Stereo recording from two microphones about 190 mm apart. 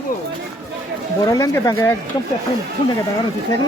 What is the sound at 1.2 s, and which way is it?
Speech, 20° left (ahead or behind).